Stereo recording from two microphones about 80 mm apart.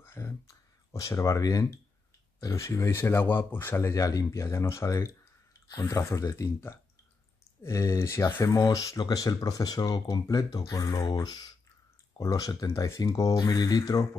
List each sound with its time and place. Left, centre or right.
0.0 s a sound: left
0.9 s speech: left
3.9 s speech: left
5.7 s speech: left
8.5 s speech: left